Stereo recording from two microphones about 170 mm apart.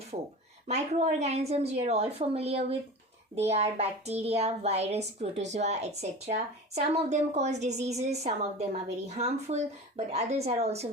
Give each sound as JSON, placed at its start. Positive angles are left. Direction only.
{"t": 0.1, "sound": "a child's voice", "side_deg": -40}